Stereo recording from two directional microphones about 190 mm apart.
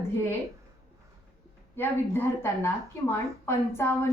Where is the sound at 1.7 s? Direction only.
10° left (ahead or behind).